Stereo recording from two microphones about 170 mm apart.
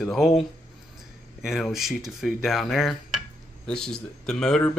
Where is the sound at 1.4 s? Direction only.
Centre (ahead or behind).